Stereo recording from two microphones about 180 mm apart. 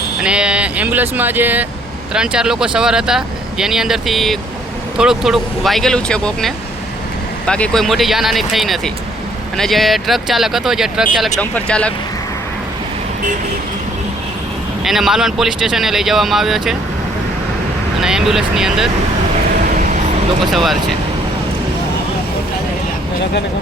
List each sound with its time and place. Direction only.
0.2 s speech: 5° right (ahead or behind)
14.8 s speech: centre (ahead or behind)
18.0 s speech: centre (ahead or behind)
20.4 s speech: centre (ahead or behind)